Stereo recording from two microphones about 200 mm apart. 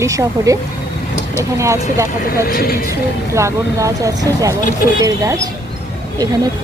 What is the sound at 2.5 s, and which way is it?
Speech, 50° left (ahead or behind).